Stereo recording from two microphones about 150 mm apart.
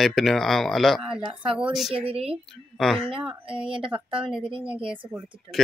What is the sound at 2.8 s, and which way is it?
Speech, centre (ahead or behind).